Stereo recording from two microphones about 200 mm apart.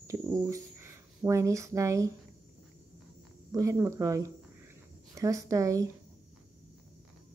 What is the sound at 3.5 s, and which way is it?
Speech, 15° right (ahead or behind).